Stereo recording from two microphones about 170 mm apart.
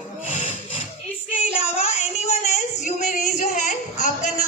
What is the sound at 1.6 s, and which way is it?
Singing, 40° left (ahead or behind).